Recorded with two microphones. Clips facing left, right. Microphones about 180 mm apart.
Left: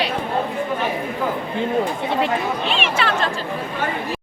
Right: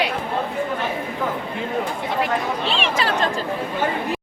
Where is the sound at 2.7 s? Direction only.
35° right (ahead or behind).